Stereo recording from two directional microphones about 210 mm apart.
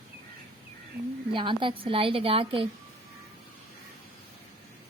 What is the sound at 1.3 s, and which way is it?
Speech, 25° right (ahead or behind).